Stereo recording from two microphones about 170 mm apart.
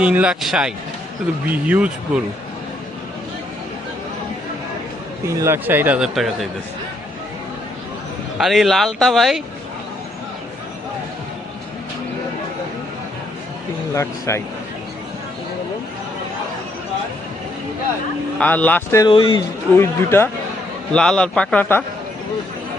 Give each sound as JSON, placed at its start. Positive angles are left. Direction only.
{"t": 0.0, "sound": "a man's voice", "side_deg": -5}
{"t": 5.2, "sound": "a man's voice", "side_deg": -15}
{"t": 8.4, "sound": "speech", "side_deg": 0}
{"t": 13.9, "sound": "speech", "side_deg": 15}
{"t": 18.3, "sound": "speech", "side_deg": 10}
{"t": 19.0, "sound": "a man's voice", "side_deg": 30}
{"t": 19.7, "sound": "speech", "side_deg": 15}